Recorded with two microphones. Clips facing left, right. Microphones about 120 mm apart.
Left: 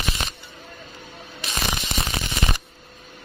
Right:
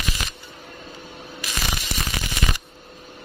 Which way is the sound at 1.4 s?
25° left (ahead or behind).